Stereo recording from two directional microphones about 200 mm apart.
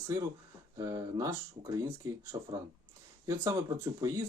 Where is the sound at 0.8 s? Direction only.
15° right (ahead or behind).